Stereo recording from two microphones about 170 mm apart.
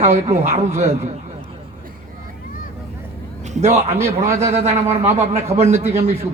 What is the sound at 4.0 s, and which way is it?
Speech, 15° right (ahead or behind).